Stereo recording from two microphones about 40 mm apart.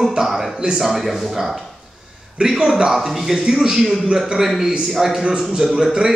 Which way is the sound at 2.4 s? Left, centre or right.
Centre.